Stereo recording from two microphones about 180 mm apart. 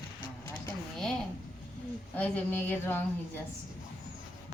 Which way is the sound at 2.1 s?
10° left (ahead or behind).